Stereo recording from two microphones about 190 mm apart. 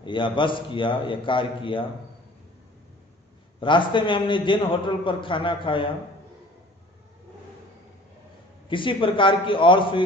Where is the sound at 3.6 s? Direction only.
25° left (ahead or behind).